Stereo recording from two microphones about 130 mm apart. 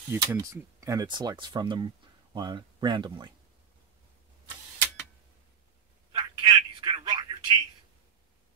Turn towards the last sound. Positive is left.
turn(degrees=-35)  # may be behind; listen again after turning